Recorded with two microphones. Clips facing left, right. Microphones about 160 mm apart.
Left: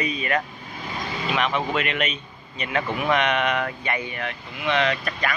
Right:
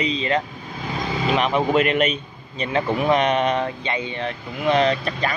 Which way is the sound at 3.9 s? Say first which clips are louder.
Right 3 dB; 20° right (ahead or behind).